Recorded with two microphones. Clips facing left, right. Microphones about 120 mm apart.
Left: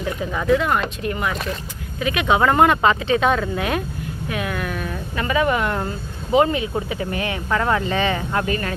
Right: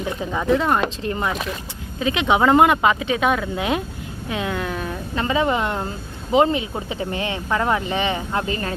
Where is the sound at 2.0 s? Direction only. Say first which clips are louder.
Even; 25° right (ahead or behind).